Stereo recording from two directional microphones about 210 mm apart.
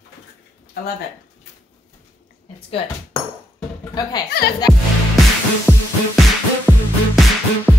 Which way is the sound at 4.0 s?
20° left (ahead or behind).